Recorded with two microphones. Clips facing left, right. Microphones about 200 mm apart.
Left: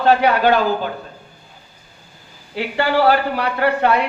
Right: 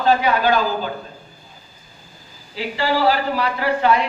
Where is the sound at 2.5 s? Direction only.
60° left (ahead or behind).